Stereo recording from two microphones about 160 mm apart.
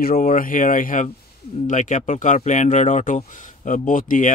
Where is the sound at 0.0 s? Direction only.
60° left (ahead or behind).